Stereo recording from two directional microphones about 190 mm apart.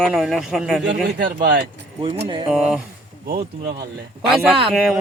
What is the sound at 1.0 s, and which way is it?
Speech, 60° right (ahead or behind).